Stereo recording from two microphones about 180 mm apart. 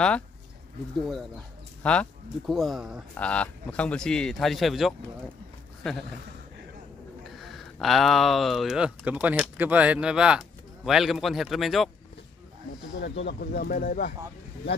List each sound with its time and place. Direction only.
1.8 s speech: 5° left (ahead or behind)
7.3 s speech: centre (ahead or behind)
12.9 s speech: 80° left; by 14.1 s 55° left (ahead or behind)